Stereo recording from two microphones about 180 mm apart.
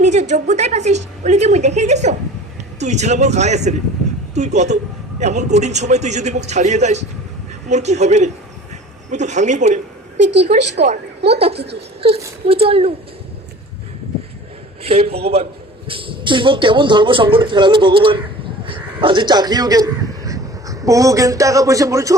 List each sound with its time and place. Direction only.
0.0 s a woman's voice: 40° right (ahead or behind)
14.8 s a man's voice: 35° right (ahead or behind); by 22.1 s 20° right (ahead or behind)